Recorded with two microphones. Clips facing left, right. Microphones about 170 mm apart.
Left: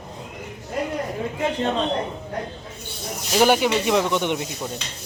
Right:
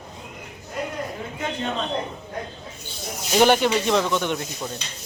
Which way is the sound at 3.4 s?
5° left (ahead or behind).